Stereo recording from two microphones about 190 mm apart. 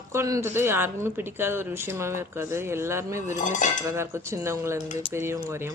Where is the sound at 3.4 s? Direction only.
40° left (ahead or behind).